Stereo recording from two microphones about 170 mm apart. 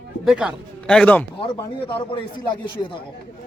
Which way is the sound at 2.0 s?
30° left (ahead or behind).